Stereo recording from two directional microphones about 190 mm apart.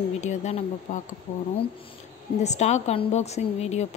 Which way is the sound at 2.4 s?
35° left (ahead or behind).